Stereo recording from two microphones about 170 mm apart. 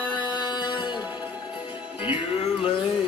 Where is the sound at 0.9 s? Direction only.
5° right (ahead or behind).